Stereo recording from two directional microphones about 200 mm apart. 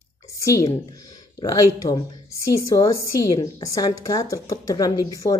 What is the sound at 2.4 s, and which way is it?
A woman's voice, 15° left (ahead or behind).